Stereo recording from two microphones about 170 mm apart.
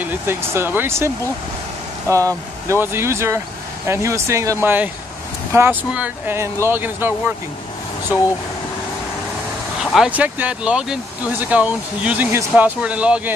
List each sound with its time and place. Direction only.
0.0 s speech: 15° right (ahead or behind)
9.9 s speech: 5° right (ahead or behind)